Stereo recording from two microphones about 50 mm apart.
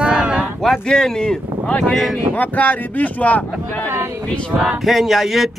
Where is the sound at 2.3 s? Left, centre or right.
Left.